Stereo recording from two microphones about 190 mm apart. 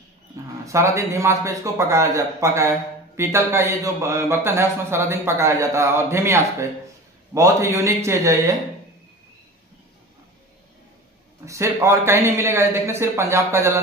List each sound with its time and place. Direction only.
0.7 s a man's voice: 15° right (ahead or behind)
11.4 s a man's voice: 15° right (ahead or behind)